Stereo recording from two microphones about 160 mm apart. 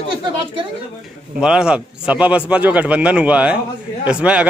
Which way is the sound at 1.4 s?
5° right (ahead or behind).